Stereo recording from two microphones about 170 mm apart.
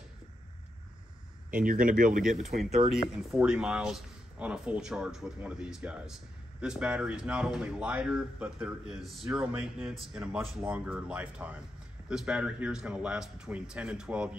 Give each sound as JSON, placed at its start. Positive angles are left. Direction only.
{"t": 1.5, "sound": "speech", "side_deg": -55}
{"t": 3.1, "sound": "speech", "side_deg": -5}